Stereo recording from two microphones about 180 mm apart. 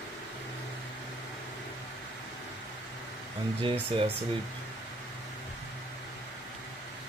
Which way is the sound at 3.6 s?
30° right (ahead or behind).